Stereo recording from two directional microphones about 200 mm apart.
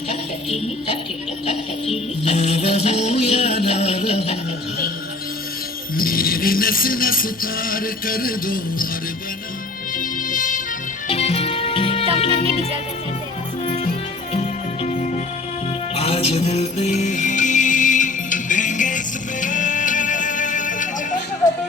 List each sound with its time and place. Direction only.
0.1 s music: 30° left (ahead or behind)
2.2 s music: 30° left (ahead or behind)
6.0 s music: 45° left (ahead or behind)
10.0 s music: 40° left (ahead or behind)
11.1 s music: 30° left (ahead or behind)
16.0 s music: 30° left (ahead or behind)